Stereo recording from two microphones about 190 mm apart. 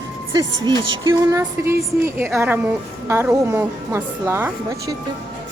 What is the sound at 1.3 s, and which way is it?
A woman's voice, 15° right (ahead or behind).